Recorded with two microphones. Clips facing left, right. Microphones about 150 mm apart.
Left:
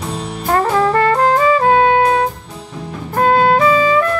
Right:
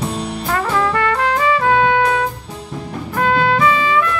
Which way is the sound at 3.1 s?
40° left (ahead or behind).